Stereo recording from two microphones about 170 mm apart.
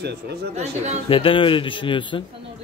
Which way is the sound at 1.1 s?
30° left (ahead or behind).